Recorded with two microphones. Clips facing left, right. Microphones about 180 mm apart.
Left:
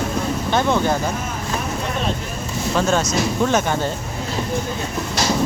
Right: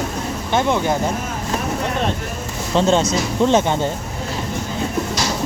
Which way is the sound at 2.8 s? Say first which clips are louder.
Right 3 dB; 25° right (ahead or behind).